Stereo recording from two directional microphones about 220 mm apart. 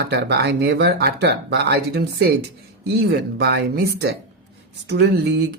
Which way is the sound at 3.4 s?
50° right (ahead or behind).